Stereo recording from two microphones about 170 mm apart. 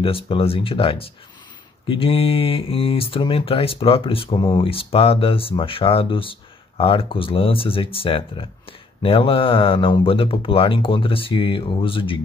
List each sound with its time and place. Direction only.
0.0 s speech: 30° left (ahead or behind)